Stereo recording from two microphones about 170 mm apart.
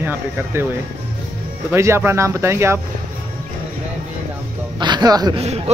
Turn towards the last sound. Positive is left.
turn(degrees=-40)  # may be behind; listen again after turning